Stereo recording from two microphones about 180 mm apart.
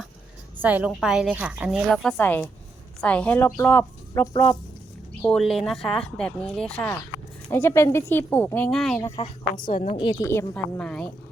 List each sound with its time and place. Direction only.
0.6 s a woman's voice: 10° right (ahead or behind); by 4.5 s 15° left (ahead or behind)
5.2 s a woman's voice: centre (ahead or behind)
9.2 s a woman's voice: 25° left (ahead or behind)
10.2 s a woman's voice: 10° left (ahead or behind)